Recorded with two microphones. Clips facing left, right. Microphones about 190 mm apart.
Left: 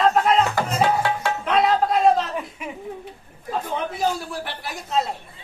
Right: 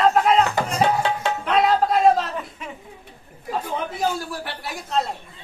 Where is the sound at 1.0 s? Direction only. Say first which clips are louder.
Even; 20° right (ahead or behind).